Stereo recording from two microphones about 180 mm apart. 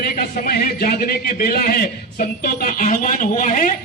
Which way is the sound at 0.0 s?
55° left (ahead or behind).